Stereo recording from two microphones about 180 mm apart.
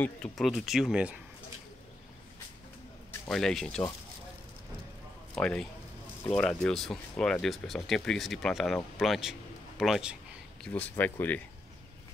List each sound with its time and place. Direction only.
0.0 s speech: 5° left (ahead or behind)
3.3 s speech: centre (ahead or behind)
5.3 s speech: 5° left (ahead or behind)
10.6 s speech: 10° left (ahead or behind)